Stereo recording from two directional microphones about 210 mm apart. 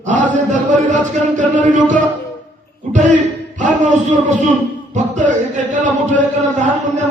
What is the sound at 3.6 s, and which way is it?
Speech, 35° right (ahead or behind).